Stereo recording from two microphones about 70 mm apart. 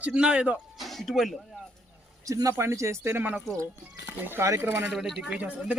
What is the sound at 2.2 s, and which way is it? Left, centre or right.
Speech, right.